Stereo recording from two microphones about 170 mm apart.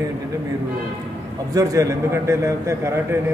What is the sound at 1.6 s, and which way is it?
A man's voice, 20° right (ahead or behind).